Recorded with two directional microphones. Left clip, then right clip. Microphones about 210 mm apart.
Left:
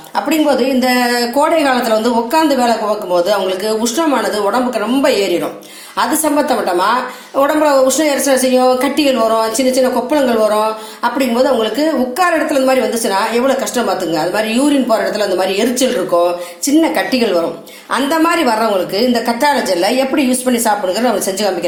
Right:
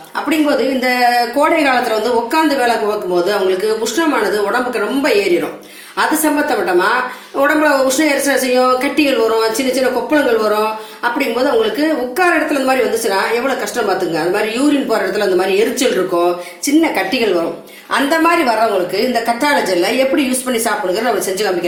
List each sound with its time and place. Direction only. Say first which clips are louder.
0.8 s a woman's voice: right 1 dB; 55° left (ahead or behind)
7.6 s a woman's voice: left 2 dB; 50° left (ahead or behind)
11.8 s a woman's voice: left 1 dB; 50° left (ahead or behind)
15.5 s a woman's voice: right 1 dB; 55° left (ahead or behind)